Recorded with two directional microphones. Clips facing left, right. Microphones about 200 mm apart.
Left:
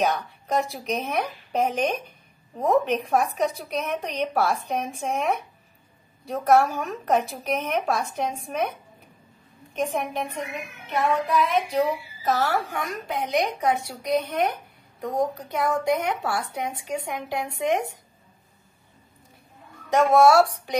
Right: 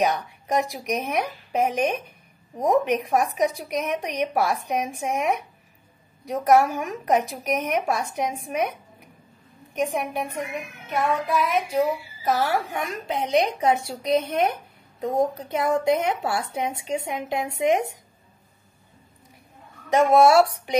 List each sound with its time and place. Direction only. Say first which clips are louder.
0.0 s a woman's voice: right 1 dB; 15° right (ahead or behind)
20.0 s a woman's voice: right 1 dB; 20° right (ahead or behind)